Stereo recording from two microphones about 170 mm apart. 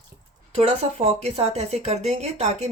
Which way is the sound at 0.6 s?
40° right (ahead or behind).